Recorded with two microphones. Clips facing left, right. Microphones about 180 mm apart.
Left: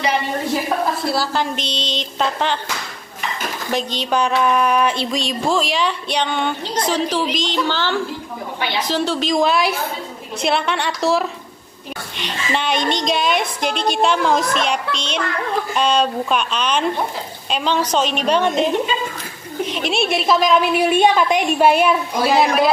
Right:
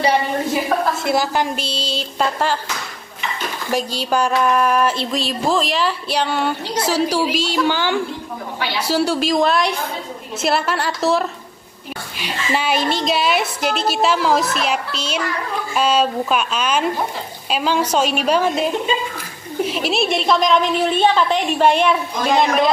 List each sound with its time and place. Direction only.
1.0 s a woman's voice: 20° right (ahead or behind)
3.7 s music: 5° right (ahead or behind)
8.7 s a woman's voice: 10° right (ahead or behind)
10.4 s music: 5° right (ahead or behind)
15.7 s a woman's voice: 5° right (ahead or behind)